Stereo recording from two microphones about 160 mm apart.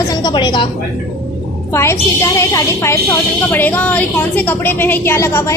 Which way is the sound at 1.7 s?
15° left (ahead or behind).